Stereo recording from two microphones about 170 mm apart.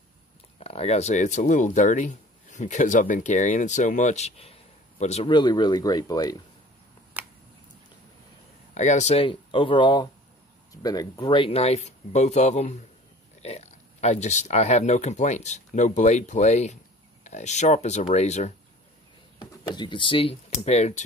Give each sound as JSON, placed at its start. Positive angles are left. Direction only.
{"t": 0.6, "sound": "speech", "side_deg": 35}
{"t": 5.3, "sound": "speech", "side_deg": 25}
{"t": 7.2, "sound": "a sound", "side_deg": -10}
{"t": 8.7, "sound": "speech", "side_deg": 45}
{"t": 19.3, "sound": "speech", "side_deg": 25}